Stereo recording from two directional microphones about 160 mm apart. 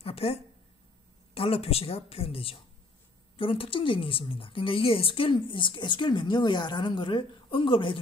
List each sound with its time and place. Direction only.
0.0 s a woman's voice: 40° left (ahead or behind)